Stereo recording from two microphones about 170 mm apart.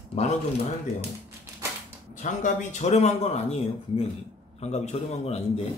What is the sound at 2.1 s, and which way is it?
Speech, 45° left (ahead or behind).